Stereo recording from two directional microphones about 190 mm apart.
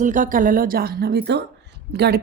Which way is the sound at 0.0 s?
45° right (ahead or behind).